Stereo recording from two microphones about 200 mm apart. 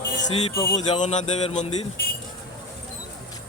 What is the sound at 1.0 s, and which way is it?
Speech, 30° left (ahead or behind).